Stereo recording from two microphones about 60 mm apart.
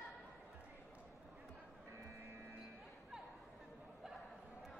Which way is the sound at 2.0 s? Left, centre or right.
Right.